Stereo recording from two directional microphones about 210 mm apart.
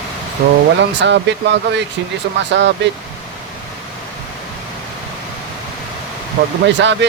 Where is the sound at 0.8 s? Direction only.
55° right (ahead or behind).